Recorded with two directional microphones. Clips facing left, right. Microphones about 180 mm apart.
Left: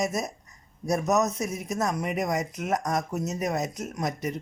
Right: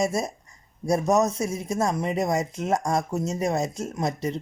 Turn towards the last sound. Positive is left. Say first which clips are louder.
# right 3 dB
turn(degrees=-30)  # may be behind; listen again after turning